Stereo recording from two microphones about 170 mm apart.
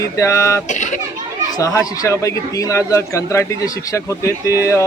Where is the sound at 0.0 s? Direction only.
15° left (ahead or behind).